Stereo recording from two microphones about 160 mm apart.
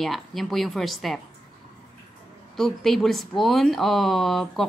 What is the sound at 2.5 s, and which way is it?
Speech, centre (ahead or behind).